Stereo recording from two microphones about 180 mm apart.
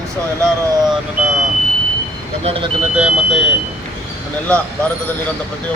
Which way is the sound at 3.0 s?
5° right (ahead or behind).